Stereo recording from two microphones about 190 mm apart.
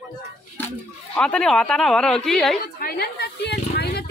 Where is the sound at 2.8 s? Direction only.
55° left (ahead or behind).